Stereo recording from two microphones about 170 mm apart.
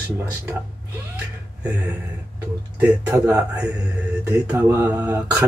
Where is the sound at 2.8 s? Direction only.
10° right (ahead or behind).